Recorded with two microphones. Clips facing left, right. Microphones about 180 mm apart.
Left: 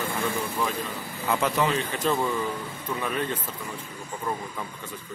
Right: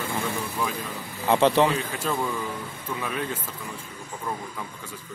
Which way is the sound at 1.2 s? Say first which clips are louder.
Right 5 dB; 30° right (ahead or behind).